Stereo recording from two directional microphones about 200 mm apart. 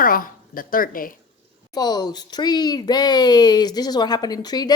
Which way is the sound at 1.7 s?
20° left (ahead or behind).